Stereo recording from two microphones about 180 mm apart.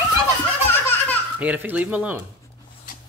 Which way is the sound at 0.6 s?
10° left (ahead or behind).